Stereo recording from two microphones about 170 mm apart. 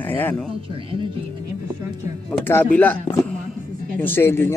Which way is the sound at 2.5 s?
10° left (ahead or behind).